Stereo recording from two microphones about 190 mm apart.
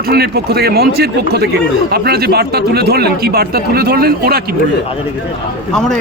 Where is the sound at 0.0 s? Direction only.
55° right (ahead or behind).